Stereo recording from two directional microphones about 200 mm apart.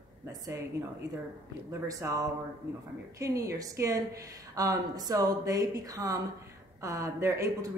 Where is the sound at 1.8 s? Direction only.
15° right (ahead or behind).